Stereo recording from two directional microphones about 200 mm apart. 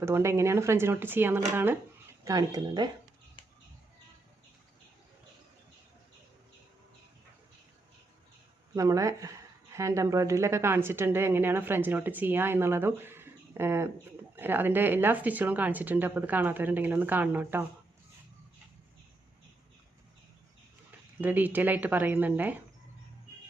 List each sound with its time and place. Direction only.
0.0 s speech: 15° right (ahead or behind)
8.7 s speech: 15° right (ahead or behind)
21.2 s speech: 10° right (ahead or behind)